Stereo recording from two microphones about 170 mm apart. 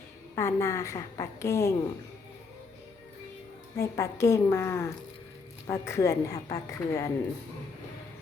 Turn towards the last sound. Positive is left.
turn(degrees=20)  # may be behind; listen again after turning